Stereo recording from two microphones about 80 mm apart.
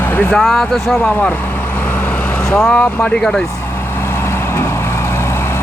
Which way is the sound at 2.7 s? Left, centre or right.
Centre.